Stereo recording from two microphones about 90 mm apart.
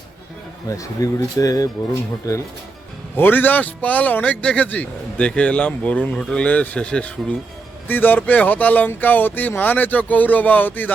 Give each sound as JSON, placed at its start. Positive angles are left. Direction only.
{"t": 0.7, "sound": "speech", "side_deg": 40}
{"t": 3.2, "sound": "a man's voice", "side_deg": 20}